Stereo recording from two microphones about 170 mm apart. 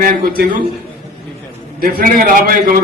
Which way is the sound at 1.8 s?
55° right (ahead or behind).